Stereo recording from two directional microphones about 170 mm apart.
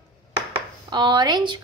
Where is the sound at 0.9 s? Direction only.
25° right (ahead or behind).